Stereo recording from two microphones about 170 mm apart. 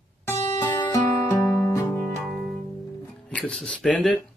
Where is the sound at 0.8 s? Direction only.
20° left (ahead or behind).